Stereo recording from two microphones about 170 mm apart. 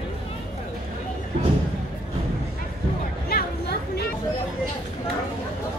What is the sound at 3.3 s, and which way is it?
Chatter, 70° left (ahead or behind).